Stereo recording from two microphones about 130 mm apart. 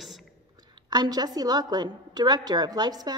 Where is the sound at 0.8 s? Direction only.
30° right (ahead or behind).